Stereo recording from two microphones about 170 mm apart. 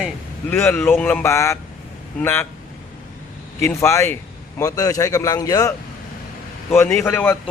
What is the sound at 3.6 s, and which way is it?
A man's voice, 15° left (ahead or behind).